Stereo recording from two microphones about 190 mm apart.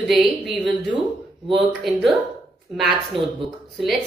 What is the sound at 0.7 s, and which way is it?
Speech, 25° right (ahead or behind).